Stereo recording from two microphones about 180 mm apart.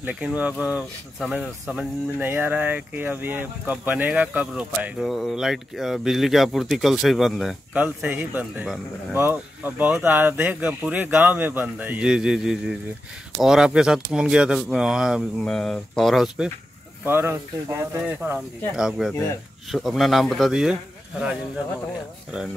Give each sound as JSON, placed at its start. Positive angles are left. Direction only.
{"t": 0.0, "sound": "speech", "side_deg": -10}
{"t": 17.0, "sound": "speech", "side_deg": -15}